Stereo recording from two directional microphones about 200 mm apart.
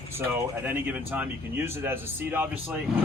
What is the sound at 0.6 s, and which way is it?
Speech, 10° right (ahead or behind).